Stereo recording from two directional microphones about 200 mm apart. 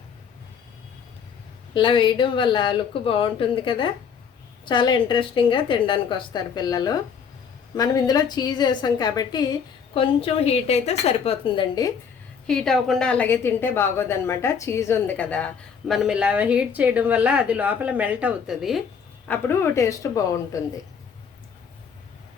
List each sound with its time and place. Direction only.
1.7 s a woman's voice: 25° left (ahead or behind)
12.5 s a woman's voice: centre (ahead or behind)
19.3 s a woman's voice: 15° left (ahead or behind)